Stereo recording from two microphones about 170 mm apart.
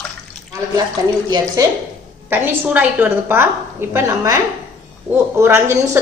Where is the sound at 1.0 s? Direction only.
20° right (ahead or behind).